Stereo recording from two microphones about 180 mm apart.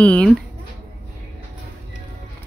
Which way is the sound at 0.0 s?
5° left (ahead or behind).